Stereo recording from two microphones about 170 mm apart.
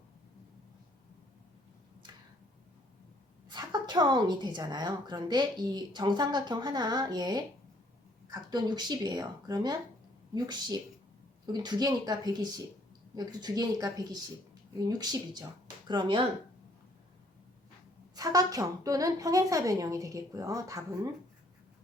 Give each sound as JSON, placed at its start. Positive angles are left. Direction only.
{"t": 3.5, "sound": "a woman's voice", "side_deg": -25}
{"t": 18.1, "sound": "a woman's voice", "side_deg": -20}